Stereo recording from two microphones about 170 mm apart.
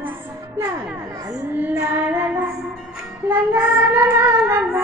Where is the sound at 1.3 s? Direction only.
10° right (ahead or behind).